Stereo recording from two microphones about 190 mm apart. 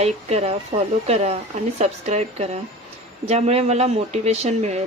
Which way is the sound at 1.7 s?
35° right (ahead or behind).